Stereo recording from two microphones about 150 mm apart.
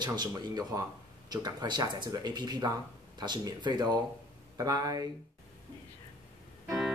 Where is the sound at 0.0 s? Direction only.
30° right (ahead or behind).